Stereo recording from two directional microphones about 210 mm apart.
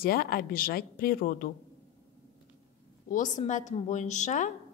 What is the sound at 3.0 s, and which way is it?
A woman's voice, 40° left (ahead or behind).